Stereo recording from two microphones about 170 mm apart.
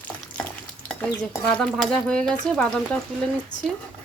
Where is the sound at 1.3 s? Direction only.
5° left (ahead or behind).